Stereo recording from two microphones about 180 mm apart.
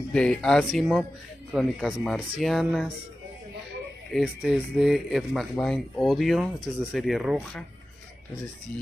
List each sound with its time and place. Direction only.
0.1 s speech: 5° left (ahead or behind)
4.1 s speech: centre (ahead or behind)